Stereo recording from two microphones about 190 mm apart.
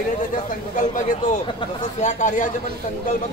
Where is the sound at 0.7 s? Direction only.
45° left (ahead or behind).